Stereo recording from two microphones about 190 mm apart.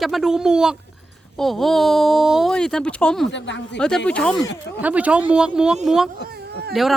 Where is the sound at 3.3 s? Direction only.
70° left (ahead or behind).